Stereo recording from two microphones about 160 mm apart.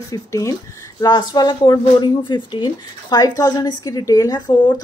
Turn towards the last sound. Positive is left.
turn(degrees=25)  # may be behind; listen again after turning